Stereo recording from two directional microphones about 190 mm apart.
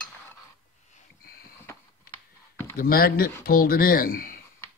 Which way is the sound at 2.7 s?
50° left (ahead or behind).